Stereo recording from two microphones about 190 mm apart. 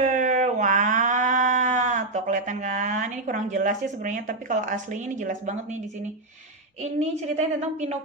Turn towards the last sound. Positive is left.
turn(degrees=-35)  # may be behind; listen again after turning